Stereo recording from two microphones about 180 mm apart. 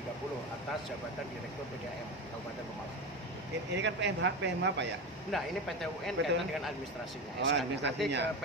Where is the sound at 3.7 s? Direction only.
75° right (ahead or behind).